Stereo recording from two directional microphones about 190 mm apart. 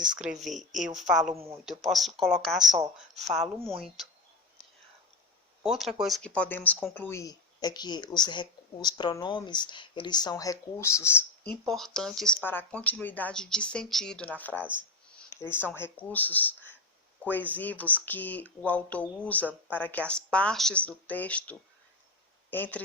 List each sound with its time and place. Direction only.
0.0 s speech: 5° right (ahead or behind)
5.6 s speech: centre (ahead or behind); by 11.5 s 15° left (ahead or behind)
11.6 s speech: centre (ahead or behind)